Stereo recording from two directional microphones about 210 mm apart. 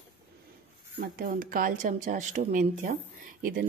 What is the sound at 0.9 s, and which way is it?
A woman's voice, 45° right (ahead or behind).